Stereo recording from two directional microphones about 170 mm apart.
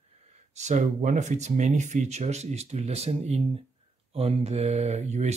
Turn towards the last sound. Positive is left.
turn(degrees=-40)  # may be behind; listen again after turning